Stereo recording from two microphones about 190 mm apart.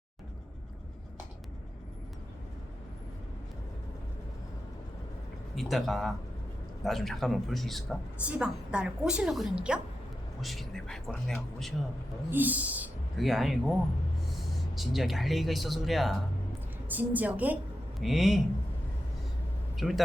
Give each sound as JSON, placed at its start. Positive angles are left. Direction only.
{"t": 5.5, "sound": "speech", "side_deg": 0}
{"t": 14.8, "sound": "speech", "side_deg": 0}
{"t": 19.7, "sound": "speech", "side_deg": 0}